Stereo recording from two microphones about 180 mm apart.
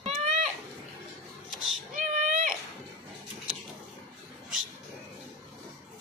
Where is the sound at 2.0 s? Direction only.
45° right (ahead or behind).